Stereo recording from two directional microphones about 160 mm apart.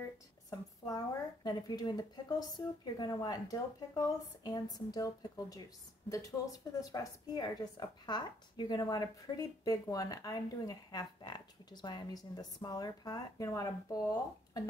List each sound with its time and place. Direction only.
0.5 s a woman's voice: 25° left (ahead or behind)